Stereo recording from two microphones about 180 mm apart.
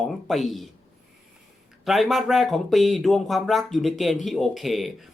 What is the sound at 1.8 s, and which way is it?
Speech, centre (ahead or behind).